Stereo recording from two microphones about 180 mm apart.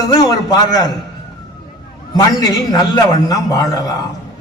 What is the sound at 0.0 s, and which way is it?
Speech, 20° left (ahead or behind).